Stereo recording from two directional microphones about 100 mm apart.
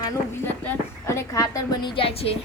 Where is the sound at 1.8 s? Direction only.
60° left (ahead or behind).